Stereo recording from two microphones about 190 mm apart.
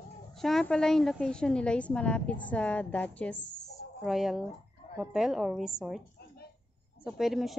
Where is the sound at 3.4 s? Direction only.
60° left (ahead or behind).